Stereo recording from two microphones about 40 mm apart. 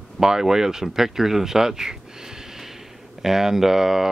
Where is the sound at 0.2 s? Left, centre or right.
Centre.